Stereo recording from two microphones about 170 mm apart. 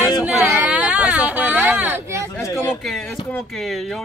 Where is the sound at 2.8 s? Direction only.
Centre (ahead or behind).